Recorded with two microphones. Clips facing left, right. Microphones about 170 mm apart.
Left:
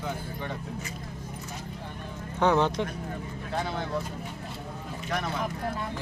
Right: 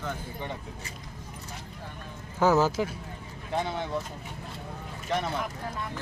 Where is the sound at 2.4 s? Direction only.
5° right (ahead or behind).